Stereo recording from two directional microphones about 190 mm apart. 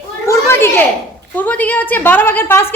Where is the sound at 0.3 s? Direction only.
15° left (ahead or behind).